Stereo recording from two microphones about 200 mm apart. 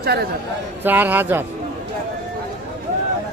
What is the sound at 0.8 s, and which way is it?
Speech, 10° right (ahead or behind).